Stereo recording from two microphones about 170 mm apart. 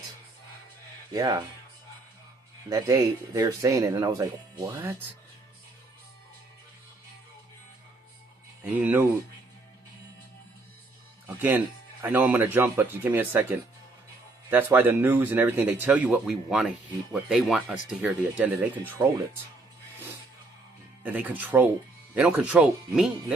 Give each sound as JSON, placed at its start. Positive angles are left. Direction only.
{"t": 1.1, "sound": "speech", "side_deg": -25}
{"t": 2.6, "sound": "speech", "side_deg": -20}
{"t": 8.6, "sound": "speech", "side_deg": -10}
{"t": 11.3, "sound": "speech", "side_deg": -10}
{"t": 21.0, "sound": "speech", "side_deg": -10}